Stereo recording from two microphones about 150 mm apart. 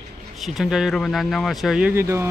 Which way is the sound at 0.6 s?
Centre (ahead or behind).